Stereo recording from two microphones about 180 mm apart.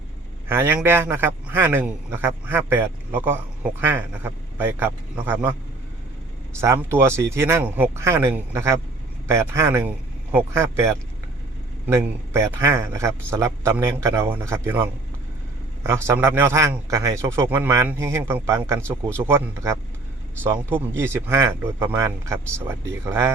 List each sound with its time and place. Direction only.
0.4 s a man's voice: 15° right (ahead or behind)
6.6 s a man's voice: 15° right (ahead or behind)